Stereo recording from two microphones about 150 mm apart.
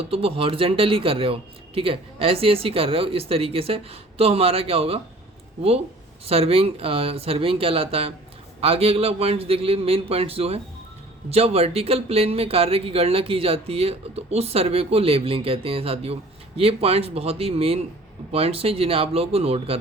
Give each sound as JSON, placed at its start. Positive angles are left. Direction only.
{"t": 0.0, "sound": "speech", "side_deg": -40}
{"t": 6.2, "sound": "speech", "side_deg": -40}